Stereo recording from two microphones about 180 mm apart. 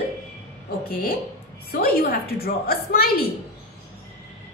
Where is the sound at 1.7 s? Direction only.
60° left (ahead or behind).